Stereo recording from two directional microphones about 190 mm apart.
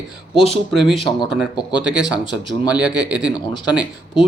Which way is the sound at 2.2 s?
25° left (ahead or behind).